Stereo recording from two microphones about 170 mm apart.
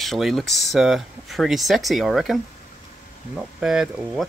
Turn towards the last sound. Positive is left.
turn(degrees=-5)  # may be behind; listen again after turning